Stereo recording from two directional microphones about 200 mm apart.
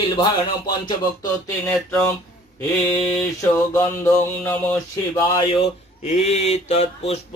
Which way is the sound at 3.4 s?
10° left (ahead or behind).